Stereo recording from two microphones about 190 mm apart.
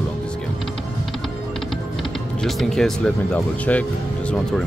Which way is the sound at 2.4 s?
Centre (ahead or behind).